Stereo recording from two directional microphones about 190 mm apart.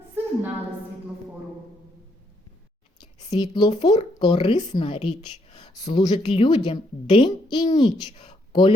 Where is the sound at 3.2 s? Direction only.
20° left (ahead or behind).